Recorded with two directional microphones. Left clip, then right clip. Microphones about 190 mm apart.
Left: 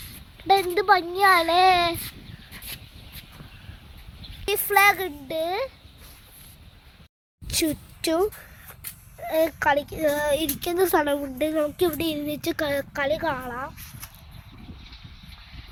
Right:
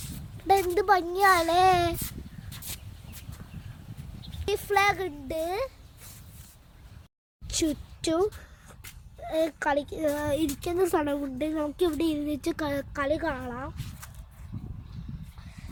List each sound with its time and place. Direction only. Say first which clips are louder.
0.7 s a child's voice: left 3 dB; 25° right (ahead or behind)
2.7 s a sound: left 3 dB; 10° right (ahead or behind)
4.4 s speech: left 5 dB; 10° right (ahead or behind)
7.4 s speech: left 3 dB; 5° right (ahead or behind)